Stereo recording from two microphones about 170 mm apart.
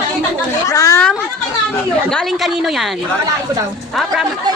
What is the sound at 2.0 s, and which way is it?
Speech, centre (ahead or behind).